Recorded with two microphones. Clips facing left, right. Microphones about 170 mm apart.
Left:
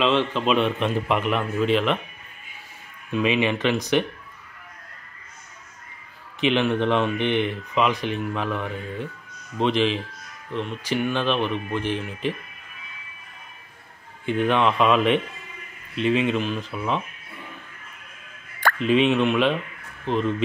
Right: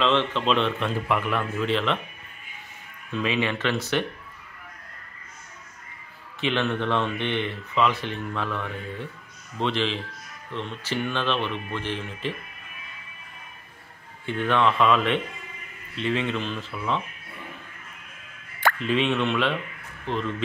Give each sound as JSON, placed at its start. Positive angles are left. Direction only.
{"t": 0.0, "sound": "speech", "side_deg": 10}
{"t": 3.1, "sound": "speech", "side_deg": 15}
{"t": 6.4, "sound": "speech", "side_deg": 15}
{"t": 14.2, "sound": "speech", "side_deg": 15}
{"t": 18.8, "sound": "speech", "side_deg": 15}